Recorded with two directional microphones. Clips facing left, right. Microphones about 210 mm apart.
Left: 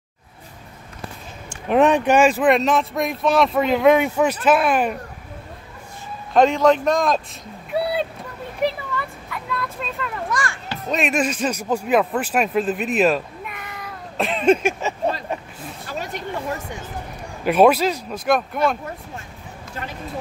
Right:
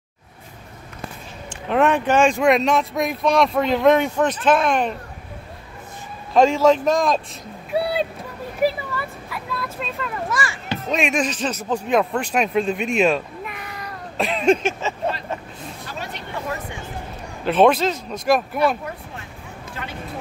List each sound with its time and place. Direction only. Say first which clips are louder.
1.7 s speech: left 2 dB; 15° left (ahead or behind)
6.3 s speech: even; centre (ahead or behind)
7.7 s a sound: right 1 dB; centre (ahead or behind)
10.9 s speech: left 1 dB; centre (ahead or behind)
16.0 s a sound: left 4 dB; 45° left (ahead or behind)
17.5 s speech: left 1 dB; 10° left (ahead or behind)